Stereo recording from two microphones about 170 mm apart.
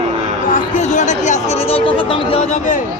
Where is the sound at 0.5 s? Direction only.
45° left (ahead or behind).